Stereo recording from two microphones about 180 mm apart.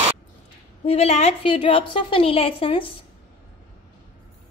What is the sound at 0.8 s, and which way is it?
A woman's voice, 35° left (ahead or behind).